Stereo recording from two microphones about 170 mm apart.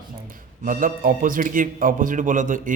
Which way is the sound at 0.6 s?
50° right (ahead or behind).